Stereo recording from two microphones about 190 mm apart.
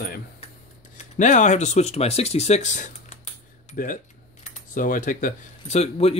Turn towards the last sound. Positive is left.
turn(degrees=35)  # may be behind; listen again after turning